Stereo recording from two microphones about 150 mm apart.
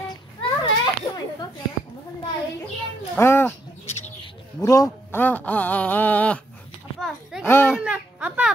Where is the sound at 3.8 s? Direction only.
45° left (ahead or behind).